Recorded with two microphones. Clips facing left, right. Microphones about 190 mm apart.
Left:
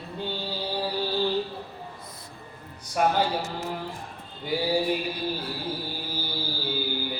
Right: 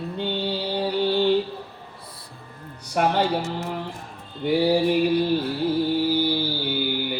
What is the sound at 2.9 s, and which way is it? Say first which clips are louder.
Music: right 2 dB; 70° right (ahead or behind).